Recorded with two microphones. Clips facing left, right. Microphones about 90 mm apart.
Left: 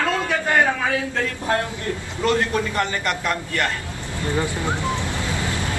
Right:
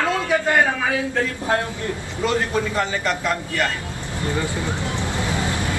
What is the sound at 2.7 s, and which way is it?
Speech, 5° right (ahead or behind).